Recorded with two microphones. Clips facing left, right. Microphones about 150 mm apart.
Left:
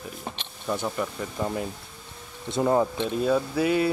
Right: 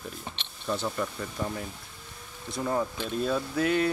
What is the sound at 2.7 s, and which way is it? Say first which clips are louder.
Speech: left 6 dB; 30° left (ahead or behind).